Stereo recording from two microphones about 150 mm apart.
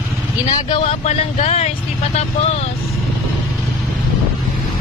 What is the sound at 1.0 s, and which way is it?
Speech, 50° left (ahead or behind).